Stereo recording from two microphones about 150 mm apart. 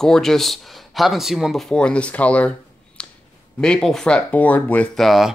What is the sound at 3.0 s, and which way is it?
Clicking, 5° left (ahead or behind).